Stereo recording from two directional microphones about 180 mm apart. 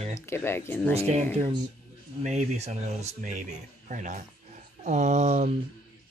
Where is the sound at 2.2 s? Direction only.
40° right (ahead or behind).